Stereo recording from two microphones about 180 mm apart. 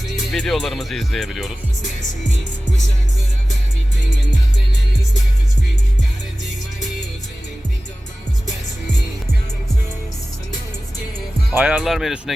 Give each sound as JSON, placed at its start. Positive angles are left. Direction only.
{"t": 0.3, "sound": "speech", "side_deg": 0}
{"t": 11.5, "sound": "speech", "side_deg": -5}